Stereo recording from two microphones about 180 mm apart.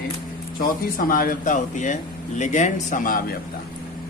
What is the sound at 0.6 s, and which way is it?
Speech, 50° left (ahead or behind).